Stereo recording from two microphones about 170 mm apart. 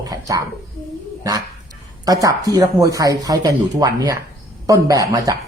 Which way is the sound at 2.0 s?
20° right (ahead or behind).